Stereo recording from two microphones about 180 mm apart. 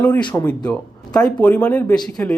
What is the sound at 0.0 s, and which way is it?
Speech, 5° left (ahead or behind).